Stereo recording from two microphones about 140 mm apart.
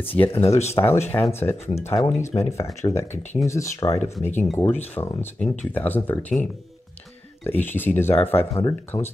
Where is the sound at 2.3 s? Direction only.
50° left (ahead or behind).